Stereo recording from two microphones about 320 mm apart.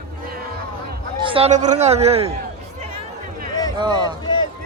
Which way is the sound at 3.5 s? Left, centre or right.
Centre.